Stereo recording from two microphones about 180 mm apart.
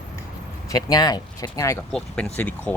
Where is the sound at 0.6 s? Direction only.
20° left (ahead or behind).